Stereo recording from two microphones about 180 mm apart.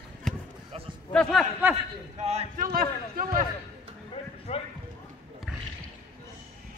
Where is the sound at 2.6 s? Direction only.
55° right (ahead or behind).